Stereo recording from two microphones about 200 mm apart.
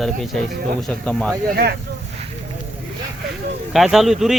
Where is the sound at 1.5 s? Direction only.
55° right (ahead or behind).